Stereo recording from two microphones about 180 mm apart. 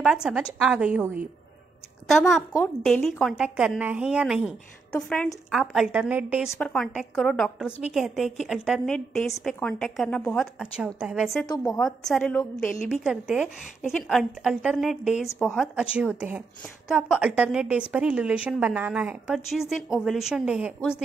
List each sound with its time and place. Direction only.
0.0 s a woman's voice: centre (ahead or behind)
6.6 s a woman's voice: 5° left (ahead or behind)
11.4 s a woman's voice: 20° left (ahead or behind)
11.8 s a woman's voice: 5° left (ahead or behind)
13.0 s a woman's voice: 5° right (ahead or behind)